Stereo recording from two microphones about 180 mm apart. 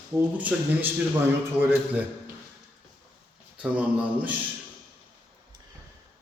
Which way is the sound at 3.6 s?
5° right (ahead or behind).